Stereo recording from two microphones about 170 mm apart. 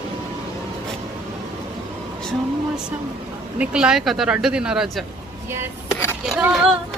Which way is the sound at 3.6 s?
5° right (ahead or behind).